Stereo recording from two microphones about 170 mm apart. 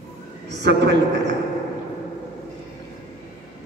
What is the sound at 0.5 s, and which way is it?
Speech, 90° right.